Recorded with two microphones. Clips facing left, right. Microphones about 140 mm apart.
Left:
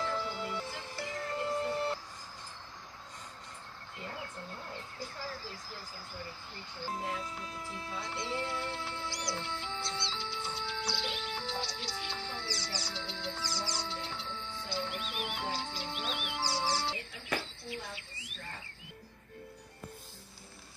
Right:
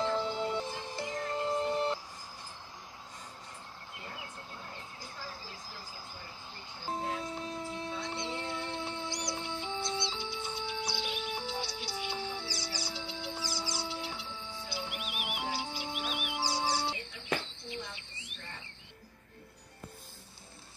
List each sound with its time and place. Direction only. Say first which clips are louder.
0.0 s music: right 4 dB; 25° right (ahead or behind)
4.9 s a sound: left 3 dB; 15° right (ahead or behind)
6.9 s music: right 3 dB; 25° right (ahead or behind)